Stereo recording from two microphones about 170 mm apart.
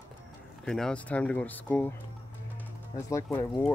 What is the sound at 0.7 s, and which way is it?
Speech, 5° left (ahead or behind).